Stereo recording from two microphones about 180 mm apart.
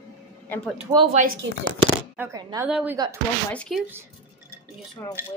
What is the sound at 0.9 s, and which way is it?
Speech, 30° right (ahead or behind).